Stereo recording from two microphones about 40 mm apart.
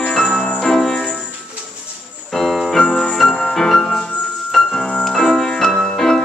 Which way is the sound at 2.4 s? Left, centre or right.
Centre.